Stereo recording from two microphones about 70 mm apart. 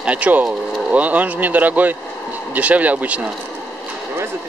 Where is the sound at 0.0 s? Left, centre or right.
Centre.